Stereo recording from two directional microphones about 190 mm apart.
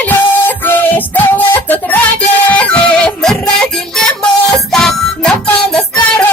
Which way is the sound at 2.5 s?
5° left (ahead or behind).